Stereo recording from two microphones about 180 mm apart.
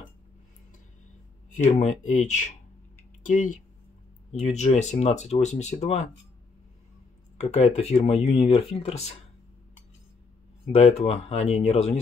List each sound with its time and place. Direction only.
1.5 s speech: 40° left (ahead or behind)
7.3 s speech: 35° left (ahead or behind)
10.7 s speech: 35° left (ahead or behind)